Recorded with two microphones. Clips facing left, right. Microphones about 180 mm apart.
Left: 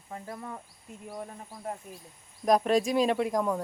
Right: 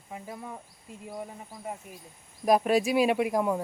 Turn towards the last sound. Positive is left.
turn(degrees=-10)  # may be behind; listen again after turning